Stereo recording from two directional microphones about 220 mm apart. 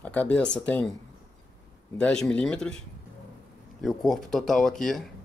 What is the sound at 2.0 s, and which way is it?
Speech, 5° left (ahead or behind).